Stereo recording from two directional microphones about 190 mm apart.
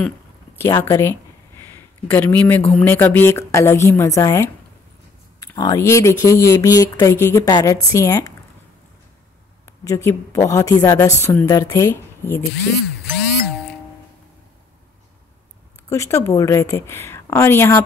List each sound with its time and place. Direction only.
0.6 s speech: 15° left (ahead or behind)
9.7 s speech: 15° left (ahead or behind)
15.9 s speech: 15° left (ahead or behind)